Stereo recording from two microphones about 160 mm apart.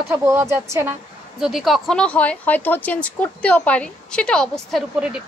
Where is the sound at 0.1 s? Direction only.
15° right (ahead or behind).